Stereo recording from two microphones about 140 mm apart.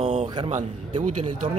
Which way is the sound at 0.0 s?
55° right (ahead or behind).